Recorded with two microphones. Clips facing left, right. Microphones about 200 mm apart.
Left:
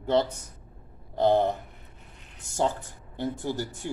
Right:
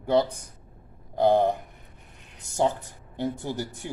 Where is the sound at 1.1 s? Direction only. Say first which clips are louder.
Right 2 dB; 15° right (ahead or behind).